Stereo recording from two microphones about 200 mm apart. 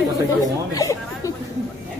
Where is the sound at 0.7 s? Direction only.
15° left (ahead or behind).